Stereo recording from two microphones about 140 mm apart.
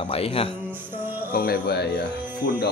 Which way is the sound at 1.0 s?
15° right (ahead or behind).